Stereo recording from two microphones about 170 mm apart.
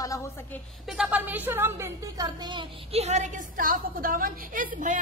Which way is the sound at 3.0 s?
40° right (ahead or behind).